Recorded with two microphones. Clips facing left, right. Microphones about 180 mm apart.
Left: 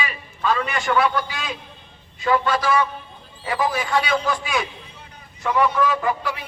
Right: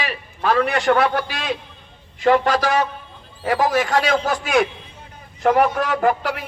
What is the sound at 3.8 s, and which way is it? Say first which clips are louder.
A man's voice: right 3 dB; 45° right (ahead or behind).